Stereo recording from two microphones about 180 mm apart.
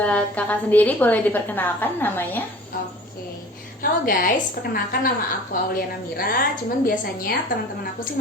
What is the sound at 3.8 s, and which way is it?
Speech, 50° left (ahead or behind).